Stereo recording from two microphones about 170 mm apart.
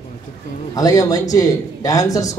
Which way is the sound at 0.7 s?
20° left (ahead or behind).